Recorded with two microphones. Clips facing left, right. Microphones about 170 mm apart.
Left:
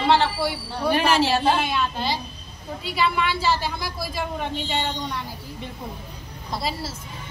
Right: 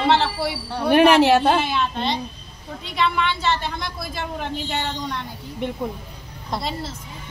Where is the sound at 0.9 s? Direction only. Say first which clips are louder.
Right 8 dB; 60° right (ahead or behind).